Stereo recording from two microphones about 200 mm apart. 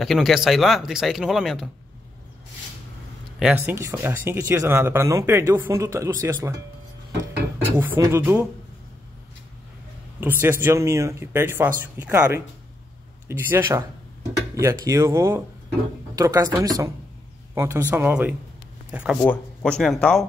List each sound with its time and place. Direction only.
0.0 s speech: centre (ahead or behind)
3.3 s speech: 5° right (ahead or behind)
7.7 s speech: 10° right (ahead or behind)
10.2 s speech: 10° right (ahead or behind)
19.2 s speech: 5° left (ahead or behind)